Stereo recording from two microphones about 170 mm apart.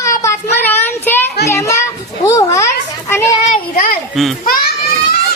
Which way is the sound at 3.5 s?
55° left (ahead or behind).